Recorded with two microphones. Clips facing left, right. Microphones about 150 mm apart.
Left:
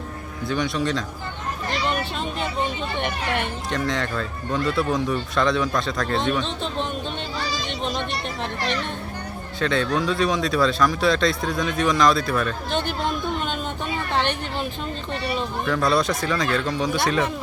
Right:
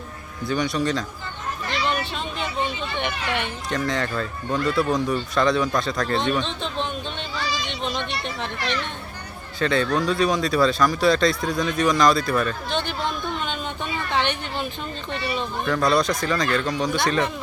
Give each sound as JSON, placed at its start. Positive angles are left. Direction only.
{"t": 0.4, "sound": "speech", "side_deg": 0}
{"t": 2.9, "sound": "speech", "side_deg": 40}
{"t": 3.7, "sound": "speech", "side_deg": 0}
{"t": 7.3, "sound": "a sound", "side_deg": 40}
{"t": 8.6, "sound": "a child's voice", "side_deg": 40}
{"t": 9.6, "sound": "speech", "side_deg": 0}
{"t": 13.4, "sound": "a sound", "side_deg": 5}
{"t": 15.3, "sound": "speech", "side_deg": 0}